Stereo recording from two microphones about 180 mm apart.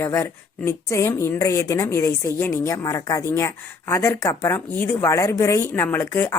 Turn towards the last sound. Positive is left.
turn(degrees=15)  # may be behind; listen again after turning